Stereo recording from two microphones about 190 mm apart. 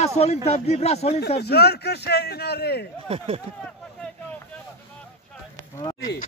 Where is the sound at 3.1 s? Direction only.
30° right (ahead or behind).